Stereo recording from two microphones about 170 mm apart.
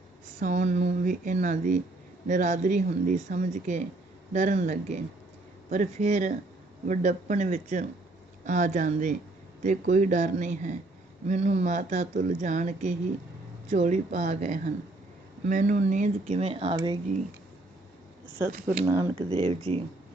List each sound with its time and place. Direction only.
0.3 s speech: 45° right (ahead or behind); by 17.0 s 25° right (ahead or behind)
18.9 s speech: 30° right (ahead or behind)